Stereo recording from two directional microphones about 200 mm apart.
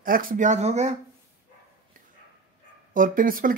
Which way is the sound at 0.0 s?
45° right (ahead or behind).